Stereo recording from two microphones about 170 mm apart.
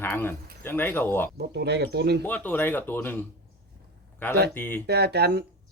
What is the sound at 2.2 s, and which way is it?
Speech, 10° left (ahead or behind).